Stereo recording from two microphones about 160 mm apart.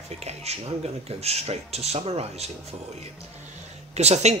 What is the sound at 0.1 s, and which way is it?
Speech, 40° right (ahead or behind).